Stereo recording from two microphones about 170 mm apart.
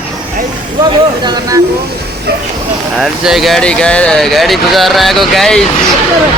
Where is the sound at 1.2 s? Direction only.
20° right (ahead or behind).